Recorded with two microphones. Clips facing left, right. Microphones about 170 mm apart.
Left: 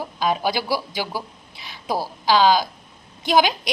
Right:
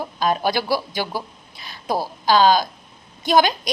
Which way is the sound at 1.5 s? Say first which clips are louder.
Right 1 dB; 10° left (ahead or behind).